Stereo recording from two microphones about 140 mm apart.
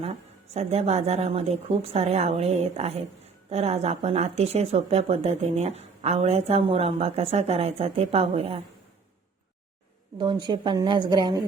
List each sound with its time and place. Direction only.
0.0 s speech: 50° right (ahead or behind)
10.2 s a woman's voice: 35° right (ahead or behind)